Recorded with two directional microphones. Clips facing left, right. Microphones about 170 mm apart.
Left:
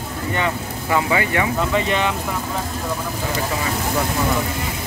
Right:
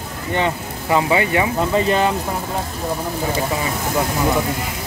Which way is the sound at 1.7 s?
35° right (ahead or behind).